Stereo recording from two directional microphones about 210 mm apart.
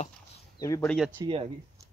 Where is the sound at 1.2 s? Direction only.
25° right (ahead or behind).